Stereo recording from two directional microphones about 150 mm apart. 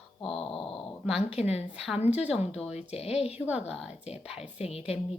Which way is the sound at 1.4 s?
45° left (ahead or behind).